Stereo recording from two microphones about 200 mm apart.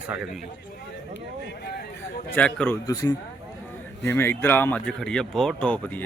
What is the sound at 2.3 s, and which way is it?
Speech, 5° left (ahead or behind).